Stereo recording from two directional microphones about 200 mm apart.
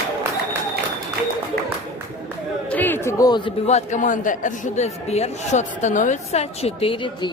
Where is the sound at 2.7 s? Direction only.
10° left (ahead or behind).